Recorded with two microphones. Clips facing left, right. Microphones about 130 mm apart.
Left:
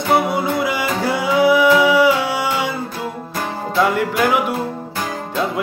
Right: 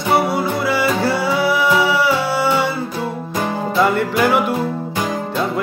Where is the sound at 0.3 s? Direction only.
15° left (ahead or behind).